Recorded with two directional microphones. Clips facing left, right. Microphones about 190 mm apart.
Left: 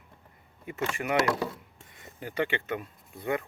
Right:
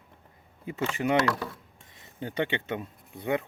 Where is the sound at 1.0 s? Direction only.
5° right (ahead or behind).